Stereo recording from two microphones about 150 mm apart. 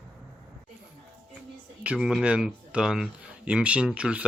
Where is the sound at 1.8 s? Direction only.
5° right (ahead or behind).